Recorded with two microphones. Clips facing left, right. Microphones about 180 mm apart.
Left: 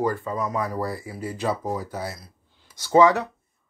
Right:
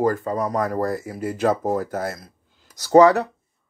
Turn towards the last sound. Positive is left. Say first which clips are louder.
# right 4 dB
turn(degrees=-40)  # may be behind; listen again after turning